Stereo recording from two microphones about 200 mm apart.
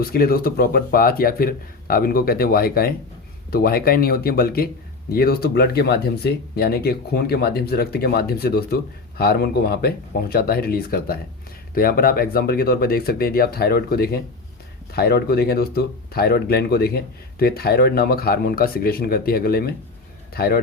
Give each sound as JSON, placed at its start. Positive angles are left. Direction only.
{"t": 0.0, "sound": "speech", "side_deg": 50}